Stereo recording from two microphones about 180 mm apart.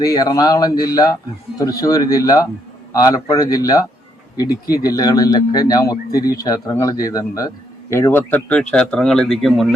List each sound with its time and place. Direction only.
0.0 s speech: 20° left (ahead or behind); by 9.7 s centre (ahead or behind)